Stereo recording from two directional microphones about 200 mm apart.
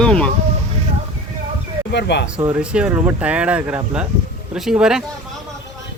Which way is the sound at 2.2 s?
5° right (ahead or behind).